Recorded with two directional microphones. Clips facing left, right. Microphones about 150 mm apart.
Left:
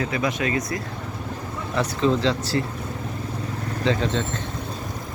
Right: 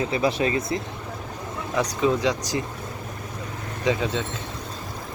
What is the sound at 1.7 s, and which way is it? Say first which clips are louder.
Speech: left 1 dB; 10° right (ahead or behind).